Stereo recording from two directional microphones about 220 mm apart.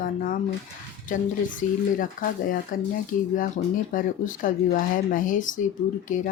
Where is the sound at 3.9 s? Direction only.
40° left (ahead or behind).